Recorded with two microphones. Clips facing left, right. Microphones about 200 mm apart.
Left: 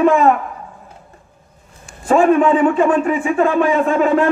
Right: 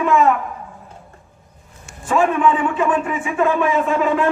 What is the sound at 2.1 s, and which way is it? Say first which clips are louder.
A man's voice: left 5 dB; 40° left (ahead or behind).